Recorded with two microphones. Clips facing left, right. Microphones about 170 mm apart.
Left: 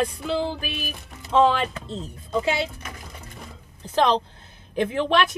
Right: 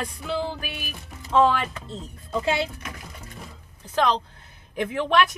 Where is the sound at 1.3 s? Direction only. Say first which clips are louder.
Left 1 dB; 25° left (ahead or behind).